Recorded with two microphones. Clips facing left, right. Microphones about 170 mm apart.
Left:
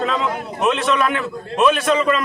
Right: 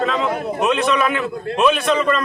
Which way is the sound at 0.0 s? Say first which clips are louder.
Right 2 dB; centre (ahead or behind).